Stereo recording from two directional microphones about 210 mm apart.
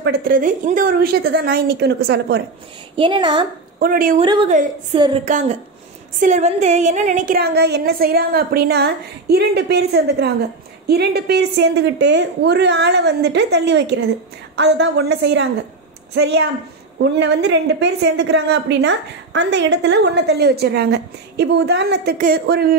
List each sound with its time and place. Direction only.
0.3 s a woman's voice: 40° right (ahead or behind)
3.0 s a woman's voice: 25° right (ahead or behind)
3.8 s a woman's voice: 45° right (ahead or behind)
4.2 s a woman's voice: 25° right (ahead or behind)
5.2 s a woman's voice: 35° right (ahead or behind)